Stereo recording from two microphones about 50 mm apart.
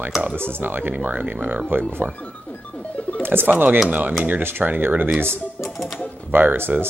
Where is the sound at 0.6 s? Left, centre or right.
Right.